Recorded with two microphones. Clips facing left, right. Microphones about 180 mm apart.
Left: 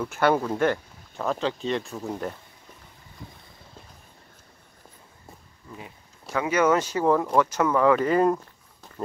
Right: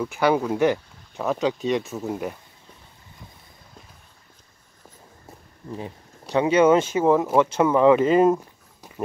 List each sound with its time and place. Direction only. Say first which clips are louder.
0.0 s speech: right 1 dB; 5° right (ahead or behind)
1.9 s speech: right 3 dB; 5° right (ahead or behind)
5.7 s speech: right 9 dB; 35° right (ahead or behind)
8.8 s walk: right 3 dB; 10° right (ahead or behind)